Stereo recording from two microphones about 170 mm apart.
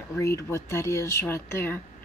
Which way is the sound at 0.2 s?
15° left (ahead or behind).